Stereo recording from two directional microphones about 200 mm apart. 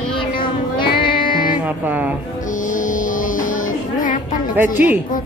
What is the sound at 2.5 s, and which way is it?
Music, 40° left (ahead or behind).